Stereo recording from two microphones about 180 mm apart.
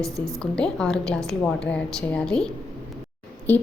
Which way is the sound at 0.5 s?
5° left (ahead or behind).